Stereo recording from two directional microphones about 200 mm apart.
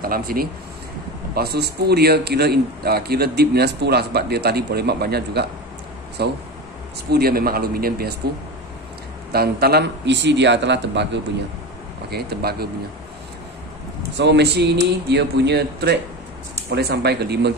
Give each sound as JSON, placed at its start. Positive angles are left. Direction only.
{"t": 0.0, "sound": "a man's voice", "side_deg": -45}
{"t": 9.3, "sound": "speech", "side_deg": -50}
{"t": 12.1, "sound": "a man's voice", "side_deg": -55}
{"t": 14.1, "sound": "speech", "side_deg": -60}